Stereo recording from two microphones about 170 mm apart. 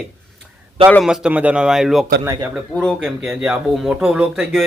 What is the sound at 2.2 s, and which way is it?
Speech, 20° right (ahead or behind).